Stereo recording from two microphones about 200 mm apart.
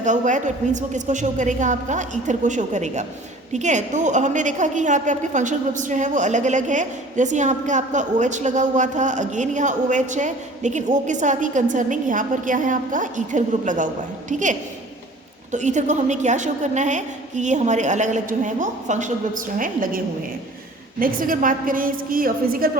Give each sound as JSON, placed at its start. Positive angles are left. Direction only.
{"t": 0.0, "sound": "a woman's voice", "side_deg": -40}
{"t": 15.5, "sound": "a woman's voice", "side_deg": -35}
{"t": 21.0, "sound": "a woman's voice", "side_deg": -45}